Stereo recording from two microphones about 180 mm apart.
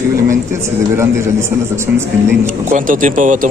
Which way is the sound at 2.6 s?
45° right (ahead or behind).